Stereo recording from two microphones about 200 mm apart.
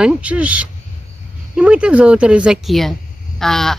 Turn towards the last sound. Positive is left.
turn(degrees=0)  # may be behind; listen again after turning